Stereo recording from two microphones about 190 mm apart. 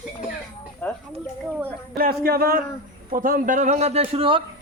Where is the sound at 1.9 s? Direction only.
55° right (ahead or behind); by 4.4 s 30° right (ahead or behind).